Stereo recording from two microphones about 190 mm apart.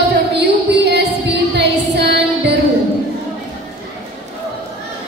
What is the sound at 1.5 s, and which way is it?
Music, 65° right (ahead or behind).